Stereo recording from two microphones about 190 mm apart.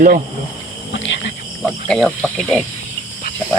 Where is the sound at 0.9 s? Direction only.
75° left (ahead or behind).